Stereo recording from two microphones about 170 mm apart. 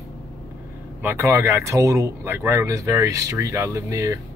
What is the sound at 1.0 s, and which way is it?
Speech, 15° right (ahead or behind).